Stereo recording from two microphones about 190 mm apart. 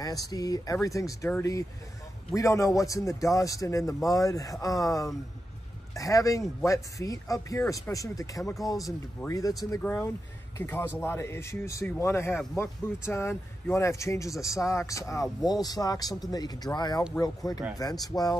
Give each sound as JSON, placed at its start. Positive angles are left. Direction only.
{"t": 0.0, "sound": "speech", "side_deg": 20}